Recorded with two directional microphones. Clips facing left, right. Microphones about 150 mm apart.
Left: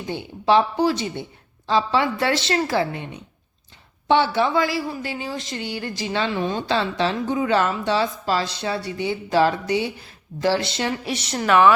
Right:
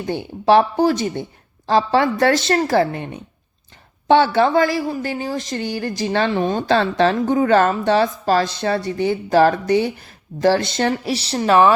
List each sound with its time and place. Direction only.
0.0 s a woman's voice: 50° right (ahead or behind)